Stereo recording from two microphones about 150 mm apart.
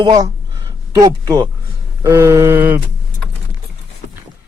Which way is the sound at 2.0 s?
15° right (ahead or behind).